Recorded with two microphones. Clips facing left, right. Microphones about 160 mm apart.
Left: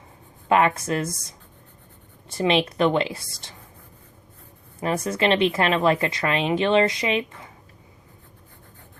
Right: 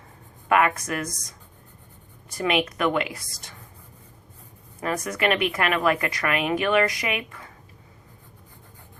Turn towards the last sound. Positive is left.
turn(degrees=25)  # may be behind; listen again after turning